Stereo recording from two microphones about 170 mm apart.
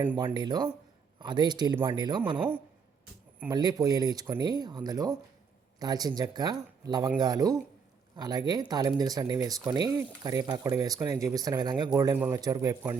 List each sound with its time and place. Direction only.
0.2 s speech: 25° right (ahead or behind)
3.5 s speech: 25° right (ahead or behind)